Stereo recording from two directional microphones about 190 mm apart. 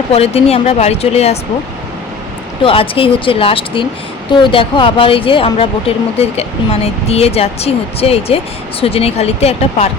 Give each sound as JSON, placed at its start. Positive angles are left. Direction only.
{"t": 0.1, "sound": "speech", "side_deg": 30}
{"t": 2.6, "sound": "speech", "side_deg": 30}